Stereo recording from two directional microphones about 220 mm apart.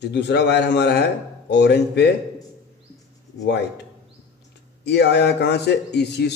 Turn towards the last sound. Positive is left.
turn(degrees=50)  # may be behind; listen again after turning